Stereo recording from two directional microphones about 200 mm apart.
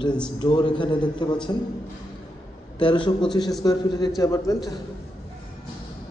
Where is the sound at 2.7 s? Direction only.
25° left (ahead or behind).